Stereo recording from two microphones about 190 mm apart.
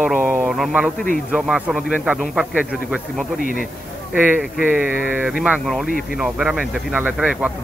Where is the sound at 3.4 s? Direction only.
45° left (ahead or behind).